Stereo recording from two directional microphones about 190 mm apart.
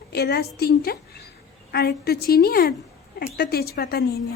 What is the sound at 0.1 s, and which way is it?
A woman's voice, 55° left (ahead or behind).